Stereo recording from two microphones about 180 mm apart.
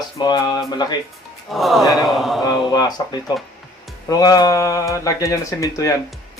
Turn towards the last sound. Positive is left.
turn(degrees=20)  # may be behind; listen again after turning